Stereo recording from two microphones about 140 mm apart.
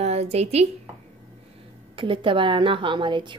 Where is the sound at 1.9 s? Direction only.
40° right (ahead or behind).